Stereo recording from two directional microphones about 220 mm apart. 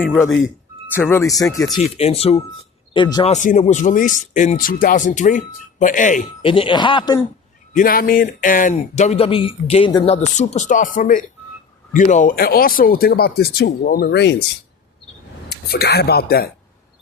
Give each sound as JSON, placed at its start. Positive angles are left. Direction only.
{"t": 0.0, "sound": "speech", "side_deg": 5}
{"t": 0.3, "sound": "speech", "side_deg": 60}
{"t": 0.9, "sound": "speech", "side_deg": 10}
{"t": 2.0, "sound": "speech", "side_deg": 25}
{"t": 3.3, "sound": "speech", "side_deg": 35}
{"t": 6.4, "sound": "speech", "side_deg": 25}
{"t": 7.8, "sound": "speech", "side_deg": 40}
{"t": 15.4, "sound": "speech", "side_deg": 45}